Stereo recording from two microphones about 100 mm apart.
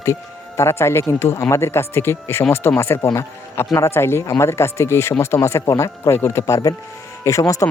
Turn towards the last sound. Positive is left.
turn(degrees=30)  # may be behind; listen again after turning